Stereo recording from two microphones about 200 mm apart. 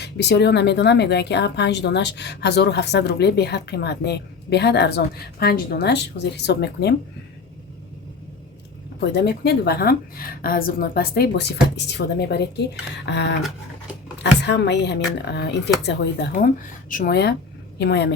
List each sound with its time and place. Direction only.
0.0 s a woman's voice: 60° left (ahead or behind)
9.0 s a woman's voice: 55° left (ahead or behind)
14.4 s a woman's voice: 60° left (ahead or behind)